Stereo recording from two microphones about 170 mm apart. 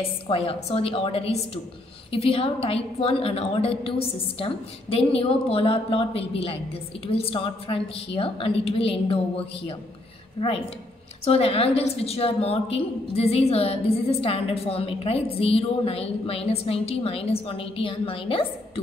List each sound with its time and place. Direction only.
0.0 s a woman's voice: 35° left (ahead or behind)